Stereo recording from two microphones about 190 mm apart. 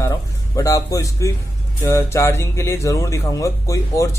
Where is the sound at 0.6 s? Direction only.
15° left (ahead or behind).